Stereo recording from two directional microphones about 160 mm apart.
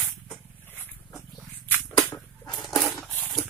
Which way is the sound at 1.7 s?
10° left (ahead or behind).